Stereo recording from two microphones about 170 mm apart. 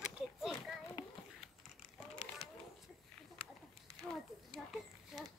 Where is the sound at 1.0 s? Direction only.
25° left (ahead or behind).